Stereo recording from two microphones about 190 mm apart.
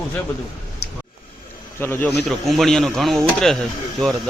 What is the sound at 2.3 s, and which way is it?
Speech, centre (ahead or behind).